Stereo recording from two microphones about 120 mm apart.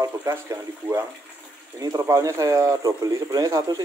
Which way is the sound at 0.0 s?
30° right (ahead or behind).